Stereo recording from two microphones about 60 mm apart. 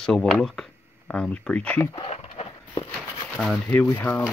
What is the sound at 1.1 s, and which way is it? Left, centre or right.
Speech, centre.